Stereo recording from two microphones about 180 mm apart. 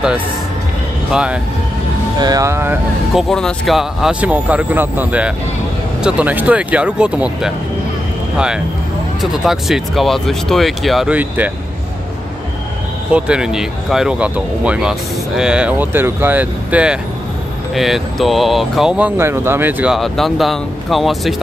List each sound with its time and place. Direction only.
1.1 s speech: 5° right (ahead or behind)
2.1 s speech: 20° right (ahead or behind)
3.2 s speech: centre (ahead or behind)
9.2 s speech: centre (ahead or behind)
13.1 s speech: 5° right (ahead or behind)